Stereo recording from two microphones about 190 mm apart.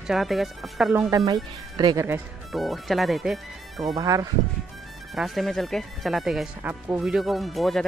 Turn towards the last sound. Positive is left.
turn(degrees=0)  # may be behind; listen again after turning